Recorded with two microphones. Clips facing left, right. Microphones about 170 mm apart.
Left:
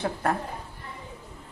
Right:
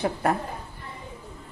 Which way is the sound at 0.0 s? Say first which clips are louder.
Right 3 dB; 15° right (ahead or behind).